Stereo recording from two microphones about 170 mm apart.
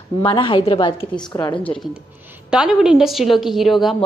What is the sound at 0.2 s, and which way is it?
A woman's voice, 30° left (ahead or behind).